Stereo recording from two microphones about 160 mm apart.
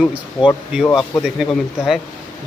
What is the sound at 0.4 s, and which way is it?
Speech, 30° left (ahead or behind).